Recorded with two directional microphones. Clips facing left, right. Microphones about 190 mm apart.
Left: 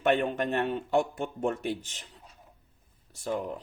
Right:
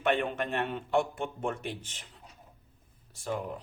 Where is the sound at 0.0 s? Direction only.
40° left (ahead or behind).